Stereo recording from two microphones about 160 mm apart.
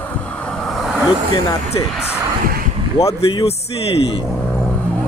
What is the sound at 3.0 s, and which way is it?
Speech, 40° left (ahead or behind).